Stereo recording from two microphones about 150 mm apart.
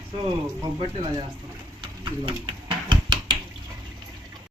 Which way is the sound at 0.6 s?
30° right (ahead or behind).